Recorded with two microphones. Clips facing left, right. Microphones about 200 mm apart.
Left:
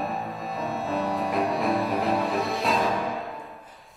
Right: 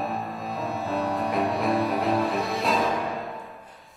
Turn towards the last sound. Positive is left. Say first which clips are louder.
# even
turn(degrees=0)  # may be behind; listen again after turning